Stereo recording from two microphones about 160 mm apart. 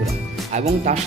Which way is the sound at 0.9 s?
45° right (ahead or behind).